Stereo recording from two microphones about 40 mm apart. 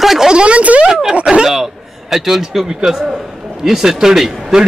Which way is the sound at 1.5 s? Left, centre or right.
Centre.